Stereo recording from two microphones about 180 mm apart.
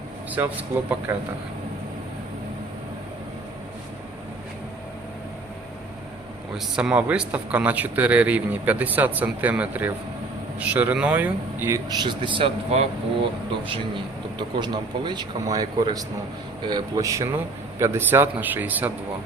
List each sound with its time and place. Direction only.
0.3 s speech: 10° right (ahead or behind)
6.7 s speech: 5° right (ahead or behind)